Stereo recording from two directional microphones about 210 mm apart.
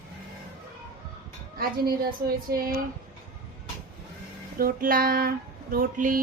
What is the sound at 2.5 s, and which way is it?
Female singing, 45° right (ahead or behind).